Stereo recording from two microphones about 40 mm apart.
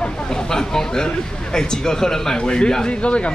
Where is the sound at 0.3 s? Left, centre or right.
Centre.